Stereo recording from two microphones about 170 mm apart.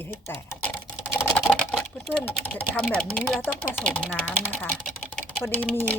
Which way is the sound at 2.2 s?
10° left (ahead or behind).